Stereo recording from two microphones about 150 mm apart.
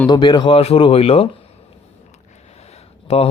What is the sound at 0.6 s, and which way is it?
Speech, 40° left (ahead or behind).